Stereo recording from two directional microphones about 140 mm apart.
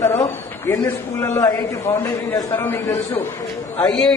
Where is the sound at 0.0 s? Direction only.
20° left (ahead or behind).